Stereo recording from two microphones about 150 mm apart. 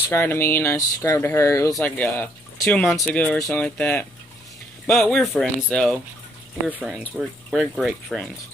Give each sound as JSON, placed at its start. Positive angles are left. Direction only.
{"t": 0.1, "sound": "speech", "side_deg": 15}
{"t": 1.8, "sound": "speech", "side_deg": 10}
{"t": 4.8, "sound": "speech", "side_deg": 5}
{"t": 7.2, "sound": "speech", "side_deg": 0}